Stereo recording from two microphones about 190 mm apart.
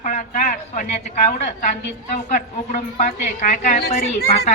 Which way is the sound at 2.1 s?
40° left (ahead or behind).